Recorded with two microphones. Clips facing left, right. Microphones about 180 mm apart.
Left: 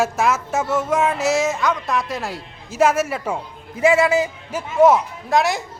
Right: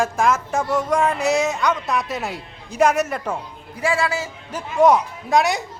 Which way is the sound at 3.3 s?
20° left (ahead or behind).